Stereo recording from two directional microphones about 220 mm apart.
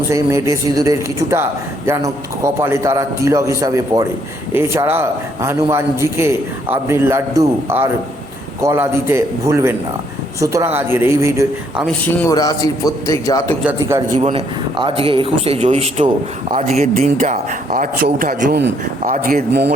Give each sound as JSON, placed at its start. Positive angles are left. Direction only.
{"t": 0.1, "sound": "a man's voice", "side_deg": -15}
{"t": 11.9, "sound": "a man's voice", "side_deg": 10}
{"t": 13.7, "sound": "a man's voice", "side_deg": -10}
{"t": 14.2, "sound": "a man's voice", "side_deg": -25}